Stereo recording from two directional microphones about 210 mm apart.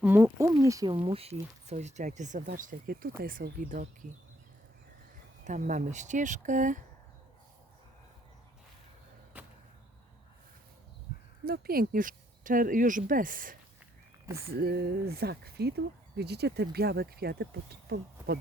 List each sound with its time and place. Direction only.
0.0 s speech: 10° right (ahead or behind)
0.9 s speech: 30° right (ahead or behind); by 3.8 s 45° right (ahead or behind)
5.5 s speech: 35° right (ahead or behind)
9.3 s arrow: 5° right (ahead or behind)
11.4 s speech: 45° right (ahead or behind)